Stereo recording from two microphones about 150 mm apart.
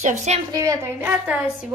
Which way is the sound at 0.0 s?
50° right (ahead or behind).